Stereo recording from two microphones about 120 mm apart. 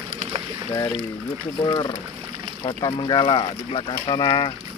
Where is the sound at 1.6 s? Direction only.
40° left (ahead or behind).